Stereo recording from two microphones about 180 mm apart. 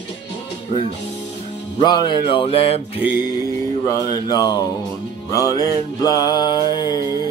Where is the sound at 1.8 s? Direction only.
25° left (ahead or behind).